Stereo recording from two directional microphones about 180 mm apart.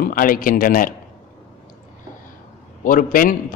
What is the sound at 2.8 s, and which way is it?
Speech, 50° left (ahead or behind).